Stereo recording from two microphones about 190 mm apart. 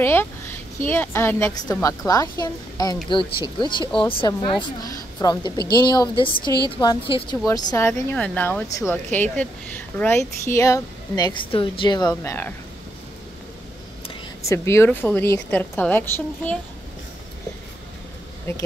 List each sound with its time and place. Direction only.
0.0 s a child's voice: 10° left (ahead or behind)
7.7 s a woman's voice: 10° left (ahead or behind)
14.5 s a woman's voice: 15° left (ahead or behind)